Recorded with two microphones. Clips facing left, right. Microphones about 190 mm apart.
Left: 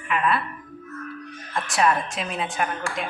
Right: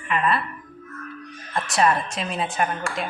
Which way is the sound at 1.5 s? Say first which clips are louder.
Right 1 dB; centre (ahead or behind).